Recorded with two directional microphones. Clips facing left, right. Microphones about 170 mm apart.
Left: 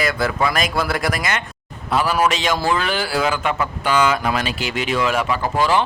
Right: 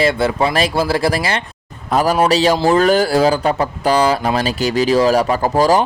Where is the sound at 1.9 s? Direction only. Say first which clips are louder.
Right 5 dB; 40° right (ahead or behind).